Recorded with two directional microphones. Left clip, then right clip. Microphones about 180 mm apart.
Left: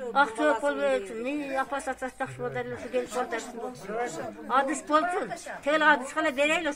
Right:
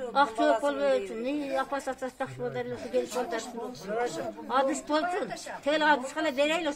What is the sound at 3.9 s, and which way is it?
Speech, 60° right (ahead or behind).